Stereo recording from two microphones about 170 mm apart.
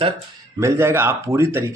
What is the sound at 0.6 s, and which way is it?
A man's voice, 15° right (ahead or behind).